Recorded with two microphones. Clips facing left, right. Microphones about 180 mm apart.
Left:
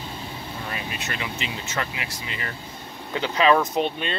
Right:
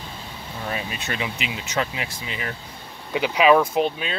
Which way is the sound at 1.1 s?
20° right (ahead or behind).